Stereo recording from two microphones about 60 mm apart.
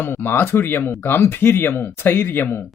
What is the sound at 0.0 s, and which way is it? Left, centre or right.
Speech, left.